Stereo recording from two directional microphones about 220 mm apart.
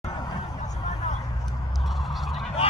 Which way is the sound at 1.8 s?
Centre (ahead or behind).